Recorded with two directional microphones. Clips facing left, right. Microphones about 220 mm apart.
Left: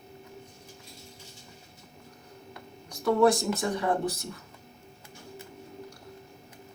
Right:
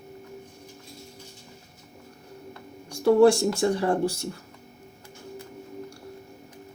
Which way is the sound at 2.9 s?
30° right (ahead or behind).